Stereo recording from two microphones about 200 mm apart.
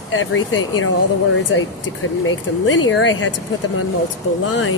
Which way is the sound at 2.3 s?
75° left (ahead or behind).